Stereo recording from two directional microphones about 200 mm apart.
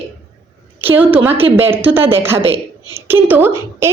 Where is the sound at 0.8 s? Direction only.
10° right (ahead or behind).